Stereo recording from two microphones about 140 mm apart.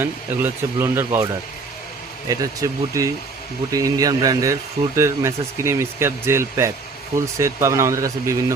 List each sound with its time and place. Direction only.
0.0 s speech: 15° right (ahead or behind)